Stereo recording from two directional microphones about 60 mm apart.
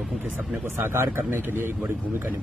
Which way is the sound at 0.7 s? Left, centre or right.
Right.